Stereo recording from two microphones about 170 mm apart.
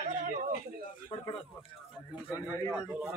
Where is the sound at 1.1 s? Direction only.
30° left (ahead or behind).